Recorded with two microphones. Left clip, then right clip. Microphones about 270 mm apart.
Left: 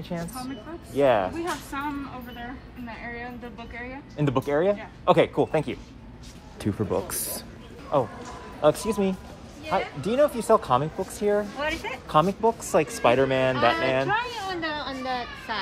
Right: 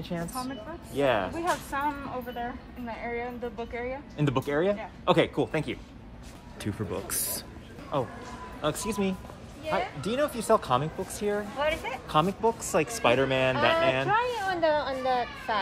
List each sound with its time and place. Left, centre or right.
0.1 s speech: centre
1.4 s a woman's voice: right
4.2 s speech: centre
14.1 s a child's voice: right